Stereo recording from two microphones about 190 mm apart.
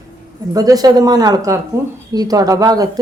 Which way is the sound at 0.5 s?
20° right (ahead or behind).